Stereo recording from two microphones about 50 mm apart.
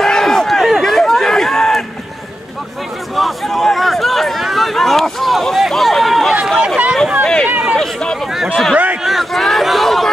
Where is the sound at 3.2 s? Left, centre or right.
Centre.